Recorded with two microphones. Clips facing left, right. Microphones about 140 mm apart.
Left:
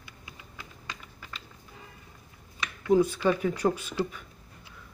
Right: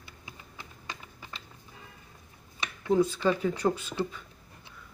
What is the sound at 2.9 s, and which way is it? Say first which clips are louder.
Speech: left 2 dB; 10° left (ahead or behind).